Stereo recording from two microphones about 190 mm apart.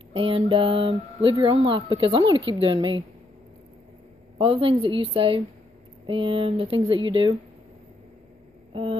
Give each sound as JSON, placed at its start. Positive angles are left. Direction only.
{"t": 0.1, "sound": "a woman's voice", "side_deg": -30}
{"t": 4.4, "sound": "a woman's voice", "side_deg": -30}
{"t": 8.7, "sound": "a sound", "side_deg": -25}